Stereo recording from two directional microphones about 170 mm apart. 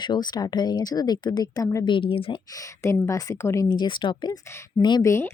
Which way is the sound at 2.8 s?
20° left (ahead or behind).